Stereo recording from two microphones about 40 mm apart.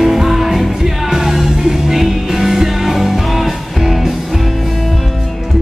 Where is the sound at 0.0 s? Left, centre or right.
Centre.